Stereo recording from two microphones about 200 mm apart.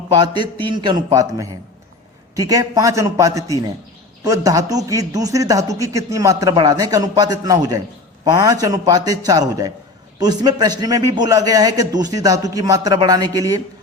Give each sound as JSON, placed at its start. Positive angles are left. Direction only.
{"t": 0.7, "sound": "a man's voice", "side_deg": -20}